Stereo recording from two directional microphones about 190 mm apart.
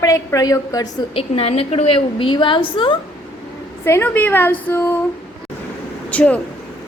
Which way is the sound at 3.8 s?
10° left (ahead or behind).